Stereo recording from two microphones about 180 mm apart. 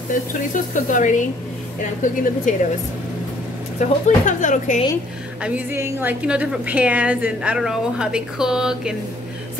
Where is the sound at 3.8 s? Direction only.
45° left (ahead or behind).